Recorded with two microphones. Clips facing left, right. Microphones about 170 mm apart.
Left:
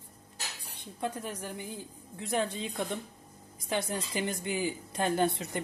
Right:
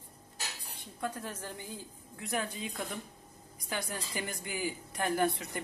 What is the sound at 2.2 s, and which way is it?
A woman's voice, 25° left (ahead or behind).